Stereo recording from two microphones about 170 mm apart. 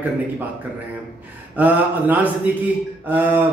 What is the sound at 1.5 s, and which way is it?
Mantra, 10° right (ahead or behind).